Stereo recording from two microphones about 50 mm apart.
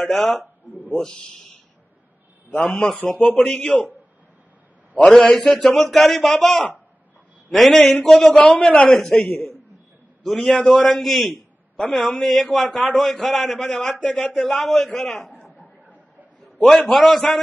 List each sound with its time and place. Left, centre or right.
0.0 s a man's voice: centre
1.0 s a man's voice: centre
2.5 s a man's voice: left
3.1 s a man's voice: left
3.3 s a man's voice: centre
3.6 s a man's voice: left
5.1 s a man's voice: centre
7.5 s a man's voice: centre
8.4 s a man's voice: left
8.9 s a man's voice: centre
10.4 s a man's voice: left
10.9 s a man's voice: centre
16.6 s a man's voice: centre